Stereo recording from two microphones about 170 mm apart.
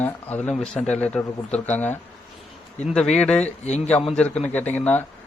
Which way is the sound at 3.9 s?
5° left (ahead or behind).